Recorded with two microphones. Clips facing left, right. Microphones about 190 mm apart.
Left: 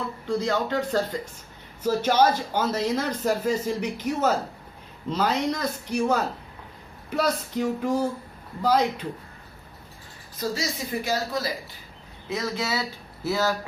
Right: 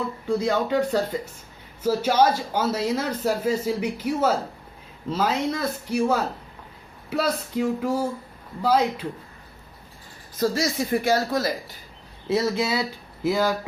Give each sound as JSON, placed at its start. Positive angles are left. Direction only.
{"t": 0.3, "sound": "speech", "side_deg": -10}
{"t": 10.5, "sound": "speech", "side_deg": -55}
{"t": 12.5, "sound": "speech", "side_deg": -20}